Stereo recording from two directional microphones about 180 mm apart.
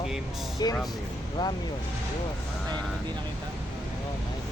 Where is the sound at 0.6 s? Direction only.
20° left (ahead or behind).